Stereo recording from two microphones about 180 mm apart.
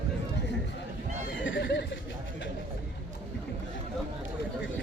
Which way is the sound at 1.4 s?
90° left.